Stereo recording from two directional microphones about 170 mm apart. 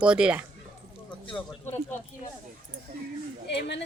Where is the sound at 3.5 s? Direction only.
85° left.